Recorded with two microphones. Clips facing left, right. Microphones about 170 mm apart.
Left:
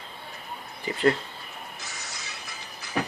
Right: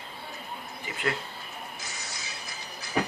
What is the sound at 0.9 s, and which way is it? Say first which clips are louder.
Speech: left 9 dB; 35° left (ahead or behind).